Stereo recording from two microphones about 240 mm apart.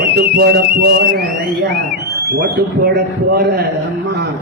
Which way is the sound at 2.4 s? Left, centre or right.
Right.